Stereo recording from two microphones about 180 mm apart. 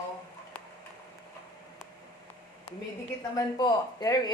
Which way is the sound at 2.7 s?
30° left (ahead or behind).